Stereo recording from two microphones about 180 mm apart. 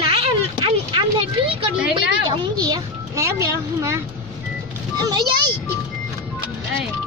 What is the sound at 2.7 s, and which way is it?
A child's voice, 15° right (ahead or behind).